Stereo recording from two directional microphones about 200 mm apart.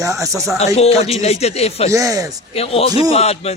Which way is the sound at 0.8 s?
30° left (ahead or behind).